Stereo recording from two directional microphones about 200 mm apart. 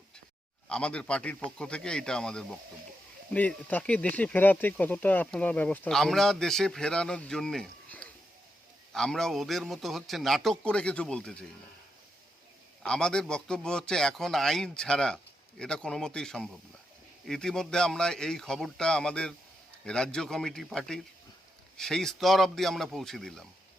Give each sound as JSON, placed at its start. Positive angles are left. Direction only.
{"t": 0.7, "sound": "a man's voice", "side_deg": 5}
{"t": 12.8, "sound": "a man's voice", "side_deg": 5}